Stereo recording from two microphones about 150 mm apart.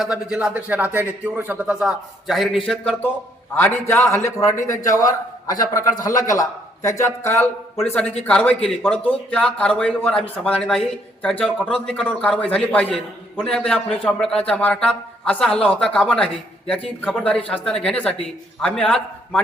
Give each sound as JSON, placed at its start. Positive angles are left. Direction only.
{"t": 0.0, "sound": "a man's voice", "side_deg": -5}